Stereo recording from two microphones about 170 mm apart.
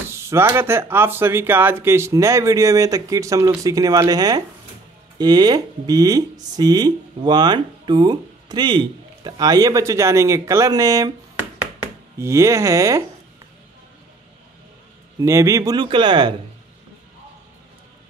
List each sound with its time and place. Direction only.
0.1 s speech: 15° right (ahead or behind)
12.2 s speech: 15° right (ahead or behind)
15.1 s speech: 15° right (ahead or behind)